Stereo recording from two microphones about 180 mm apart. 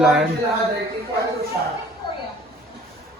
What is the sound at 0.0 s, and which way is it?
Speech, 5° right (ahead or behind).